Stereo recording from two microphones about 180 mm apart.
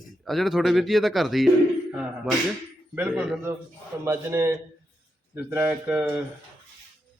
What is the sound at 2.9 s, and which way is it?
A man's voice, 10° right (ahead or behind).